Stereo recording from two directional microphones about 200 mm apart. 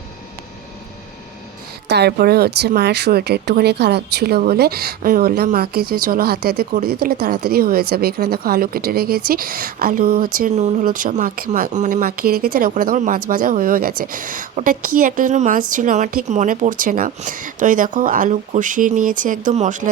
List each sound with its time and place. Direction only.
1.9 s speech: 55° right (ahead or behind); by 19.9 s 40° right (ahead or behind)